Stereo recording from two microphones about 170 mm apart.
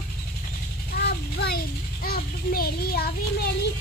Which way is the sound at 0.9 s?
65° left (ahead or behind).